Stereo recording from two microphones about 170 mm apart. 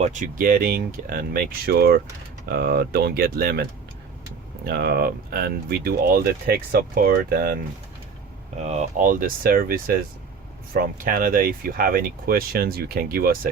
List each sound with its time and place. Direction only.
0.0 s speech: 50° right (ahead or behind)
8.6 s speech: 40° right (ahead or behind); by 13.5 s 60° right (ahead or behind)